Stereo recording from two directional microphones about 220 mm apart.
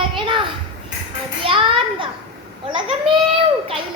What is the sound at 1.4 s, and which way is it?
Children playing, 25° right (ahead or behind).